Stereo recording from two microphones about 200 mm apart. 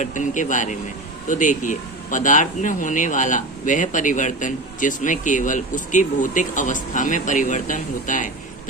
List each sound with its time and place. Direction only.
0.0 s speech: 40° left (ahead or behind)